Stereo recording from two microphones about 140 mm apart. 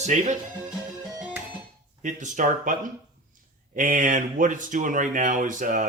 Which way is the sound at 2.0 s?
65° right (ahead or behind).